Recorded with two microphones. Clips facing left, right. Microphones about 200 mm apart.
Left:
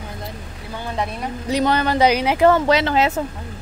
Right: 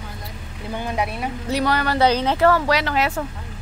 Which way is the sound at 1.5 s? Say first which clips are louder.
Left 3 dB; 20° left (ahead or behind).